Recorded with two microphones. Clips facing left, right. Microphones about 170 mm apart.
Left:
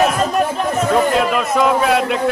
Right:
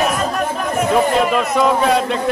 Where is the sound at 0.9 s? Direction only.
Centre (ahead or behind).